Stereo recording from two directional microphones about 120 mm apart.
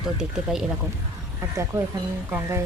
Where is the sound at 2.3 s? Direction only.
25° right (ahead or behind).